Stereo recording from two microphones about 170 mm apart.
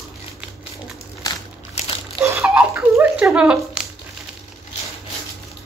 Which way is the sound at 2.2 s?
15° right (ahead or behind).